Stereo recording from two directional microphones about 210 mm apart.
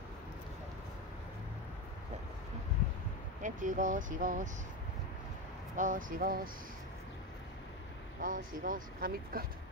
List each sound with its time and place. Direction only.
3.4 s speech: 40° right (ahead or behind)
5.8 s speech: 40° right (ahead or behind)
8.2 s speech: 40° right (ahead or behind)